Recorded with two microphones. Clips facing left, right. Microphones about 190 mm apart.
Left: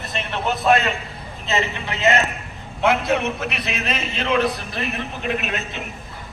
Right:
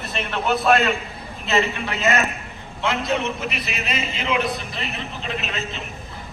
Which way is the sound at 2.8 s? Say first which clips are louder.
Left 4 dB; 60° left (ahead or behind).